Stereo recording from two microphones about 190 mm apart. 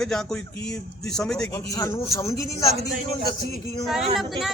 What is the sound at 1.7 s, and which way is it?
Speech, 15° left (ahead or behind).